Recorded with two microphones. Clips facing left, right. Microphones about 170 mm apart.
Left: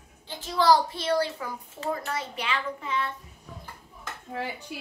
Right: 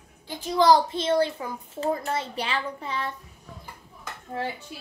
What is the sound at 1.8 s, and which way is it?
A child's voice, 25° right (ahead or behind).